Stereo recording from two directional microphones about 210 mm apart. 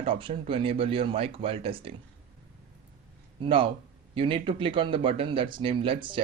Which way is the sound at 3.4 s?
25° right (ahead or behind).